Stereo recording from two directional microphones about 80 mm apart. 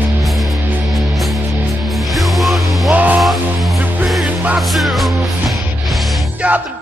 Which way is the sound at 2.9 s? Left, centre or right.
Right.